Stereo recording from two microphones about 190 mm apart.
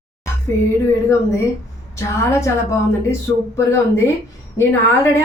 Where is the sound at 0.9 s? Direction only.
15° left (ahead or behind).